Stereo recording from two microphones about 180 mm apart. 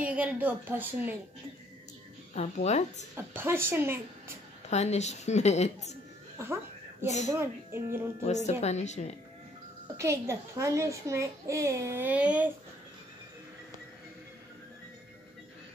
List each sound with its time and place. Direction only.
0.0 s a child's voice: 10° right (ahead or behind)
2.3 s a woman's voice: 40° left (ahead or behind)
3.2 s a child's voice: 15° right (ahead or behind)
4.6 s a woman's voice: 40° left (ahead or behind)
6.3 s a sound: 15° right (ahead or behind)
7.2 s a child's voice: 15° right (ahead or behind)
8.2 s a woman's voice: 40° left (ahead or behind)
9.9 s a child's voice: 15° right (ahead or behind)